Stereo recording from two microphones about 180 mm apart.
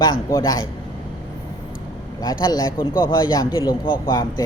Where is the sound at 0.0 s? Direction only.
20° left (ahead or behind).